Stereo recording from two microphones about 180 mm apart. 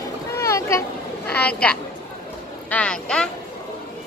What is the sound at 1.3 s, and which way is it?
A woman's voice, 5° left (ahead or behind).